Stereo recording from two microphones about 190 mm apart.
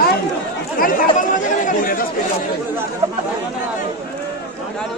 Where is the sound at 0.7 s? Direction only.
45° left (ahead or behind).